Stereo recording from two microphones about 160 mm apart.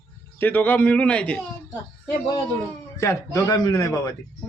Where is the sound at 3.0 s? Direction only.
20° left (ahead or behind).